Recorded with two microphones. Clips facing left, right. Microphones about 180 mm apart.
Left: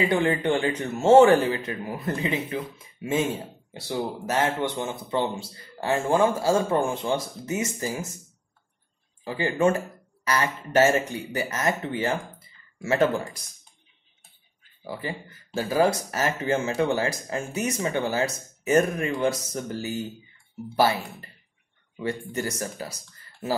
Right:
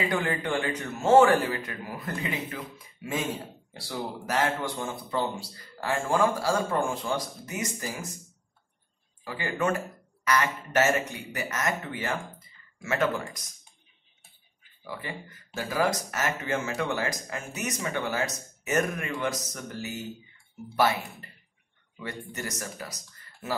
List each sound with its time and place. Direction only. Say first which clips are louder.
0.0 s a man's voice: left 6 dB; 25° left (ahead or behind)
9.2 s a man's voice: left 6 dB; 25° left (ahead or behind)
12.4 s a sound: left 7 dB; 30° left (ahead or behind)
14.8 s a man's voice: left 5 dB; 30° left (ahead or behind)
22.3 s speech: left 6 dB; 30° left (ahead or behind)